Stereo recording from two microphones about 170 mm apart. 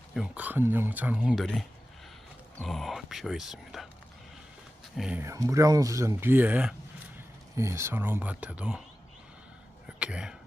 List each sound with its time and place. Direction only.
0.1 s speech: 5° right (ahead or behind)
2.6 s speech: centre (ahead or behind)
4.9 s speech: 5° right (ahead or behind)
5.2 s speech: 20° right (ahead or behind)
10.0 s speech: 5° right (ahead or behind)